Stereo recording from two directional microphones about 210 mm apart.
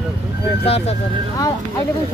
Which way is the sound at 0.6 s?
30° left (ahead or behind).